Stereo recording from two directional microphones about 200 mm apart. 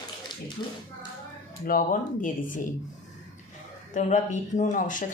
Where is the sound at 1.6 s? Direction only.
40° left (ahead or behind).